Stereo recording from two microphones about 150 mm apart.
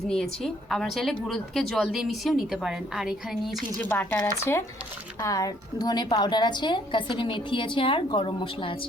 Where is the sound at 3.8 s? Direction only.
15° left (ahead or behind); by 8.9 s 35° left (ahead or behind).